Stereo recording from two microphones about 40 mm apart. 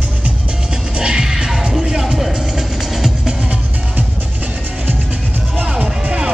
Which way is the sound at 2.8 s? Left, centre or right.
Centre.